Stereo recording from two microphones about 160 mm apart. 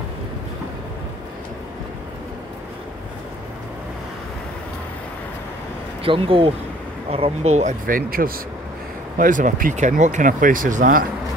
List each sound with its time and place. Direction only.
6.0 s speech: 35° right (ahead or behind)
7.8 s speech: 60° right (ahead or behind)